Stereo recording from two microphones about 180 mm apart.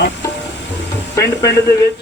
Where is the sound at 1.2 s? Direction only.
15° left (ahead or behind).